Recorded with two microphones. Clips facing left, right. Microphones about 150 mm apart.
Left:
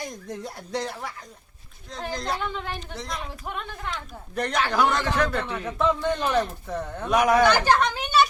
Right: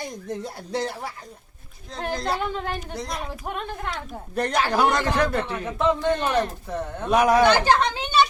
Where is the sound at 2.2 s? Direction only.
30° right (ahead or behind).